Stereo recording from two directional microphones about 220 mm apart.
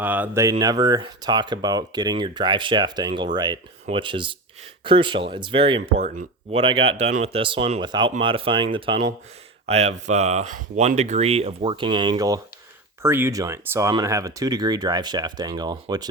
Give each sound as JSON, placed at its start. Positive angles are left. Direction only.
{"t": 0.0, "sound": "speech", "side_deg": -10}